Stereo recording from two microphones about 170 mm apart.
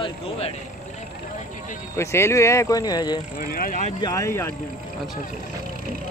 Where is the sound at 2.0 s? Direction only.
15° left (ahead or behind).